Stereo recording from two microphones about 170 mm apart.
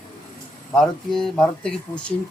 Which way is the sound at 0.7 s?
Centre (ahead or behind).